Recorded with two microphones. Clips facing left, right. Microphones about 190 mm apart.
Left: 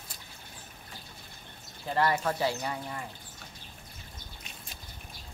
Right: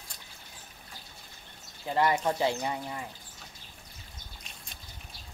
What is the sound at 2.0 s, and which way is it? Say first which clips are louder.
Speech: right 1 dB; 15° right (ahead or behind).